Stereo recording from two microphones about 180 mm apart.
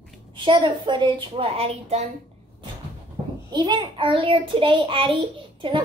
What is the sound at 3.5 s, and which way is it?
A child's voice, 25° right (ahead or behind).